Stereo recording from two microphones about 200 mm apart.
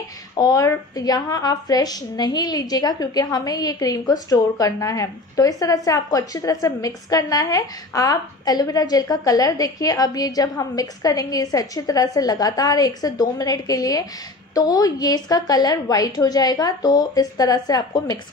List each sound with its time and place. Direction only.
0.4 s a woman's voice: 15° left (ahead or behind)